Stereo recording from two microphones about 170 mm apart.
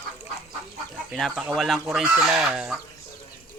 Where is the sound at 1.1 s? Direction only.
Centre (ahead or behind).